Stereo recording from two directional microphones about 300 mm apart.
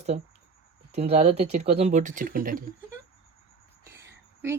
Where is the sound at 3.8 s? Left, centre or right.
Centre.